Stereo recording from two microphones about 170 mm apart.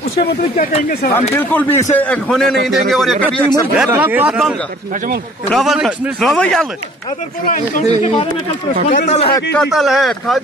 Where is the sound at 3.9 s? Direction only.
10° right (ahead or behind).